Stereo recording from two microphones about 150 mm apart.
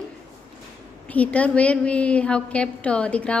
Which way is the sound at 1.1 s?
10° left (ahead or behind).